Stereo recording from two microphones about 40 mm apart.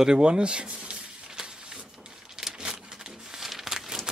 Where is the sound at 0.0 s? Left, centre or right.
Centre.